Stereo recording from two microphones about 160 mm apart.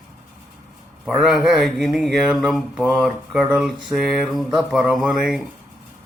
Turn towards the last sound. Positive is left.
turn(degrees=0)  # may be behind; listen again after turning